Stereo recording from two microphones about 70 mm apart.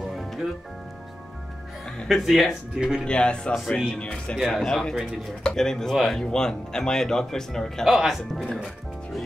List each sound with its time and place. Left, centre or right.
2.0 s speech: centre
3.1 s speech: centre
4.4 s speech: centre
7.8 s speech: centre